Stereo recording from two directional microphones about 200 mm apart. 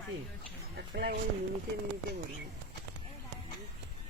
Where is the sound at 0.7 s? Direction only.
55° right (ahead or behind).